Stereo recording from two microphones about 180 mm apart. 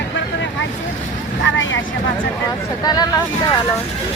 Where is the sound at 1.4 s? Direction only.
90° left.